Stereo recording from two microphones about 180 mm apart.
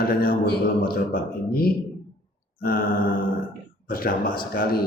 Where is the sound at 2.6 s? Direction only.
50° left (ahead or behind).